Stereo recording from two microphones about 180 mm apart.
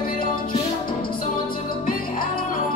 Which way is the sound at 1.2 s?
50° left (ahead or behind).